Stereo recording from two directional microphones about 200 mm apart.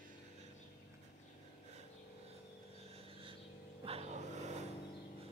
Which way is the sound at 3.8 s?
30° right (ahead or behind).